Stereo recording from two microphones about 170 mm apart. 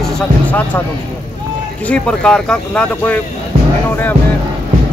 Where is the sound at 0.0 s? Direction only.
10° left (ahead or behind).